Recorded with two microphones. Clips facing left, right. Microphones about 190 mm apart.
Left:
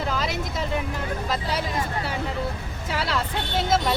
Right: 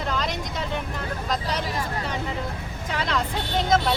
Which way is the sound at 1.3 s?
5° left (ahead or behind).